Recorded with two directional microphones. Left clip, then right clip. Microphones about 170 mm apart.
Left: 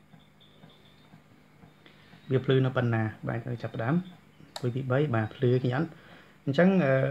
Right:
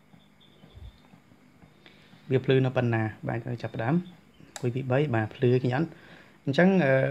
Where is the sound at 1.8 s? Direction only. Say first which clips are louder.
Right 1 dB; 20° right (ahead or behind).